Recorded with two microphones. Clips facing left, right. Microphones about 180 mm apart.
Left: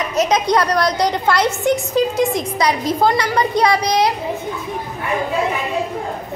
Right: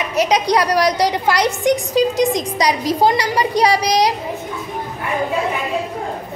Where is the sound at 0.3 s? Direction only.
15° right (ahead or behind).